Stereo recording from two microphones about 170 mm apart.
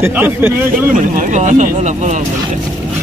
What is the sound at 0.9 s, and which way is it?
Speech, 50° right (ahead or behind).